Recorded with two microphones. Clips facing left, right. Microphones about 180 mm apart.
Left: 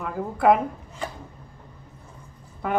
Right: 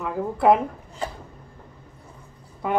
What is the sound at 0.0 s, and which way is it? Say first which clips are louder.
Speech: right 1 dB; 5° right (ahead or behind).